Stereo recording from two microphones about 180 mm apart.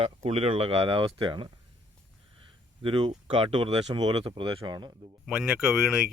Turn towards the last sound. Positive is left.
turn(degrees=-5)  # may be behind; listen again after turning